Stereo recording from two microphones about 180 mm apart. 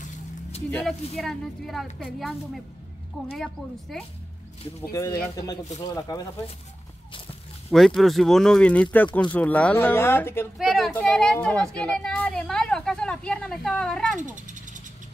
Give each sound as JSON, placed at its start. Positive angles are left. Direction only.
{"t": 0.7, "sound": "speech", "side_deg": 5}
{"t": 3.1, "sound": "speech", "side_deg": 0}
{"t": 4.9, "sound": "speech", "side_deg": 15}
{"t": 7.7, "sound": "speech", "side_deg": 0}
{"t": 10.6, "sound": "speech", "side_deg": 0}
{"t": 14.2, "sound": "cat", "side_deg": -45}